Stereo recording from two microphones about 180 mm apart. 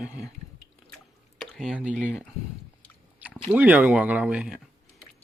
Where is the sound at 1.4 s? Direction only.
Centre (ahead or behind).